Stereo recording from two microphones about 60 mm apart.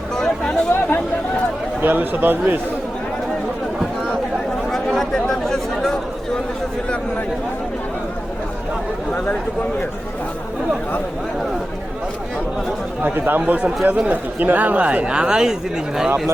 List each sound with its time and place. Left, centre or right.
0.2 s chatter: centre
0.7 s chatter: left
1.8 s a man's voice: right
4.7 s chatter: centre
13.0 s a man's voice: right; by 15.5 s centre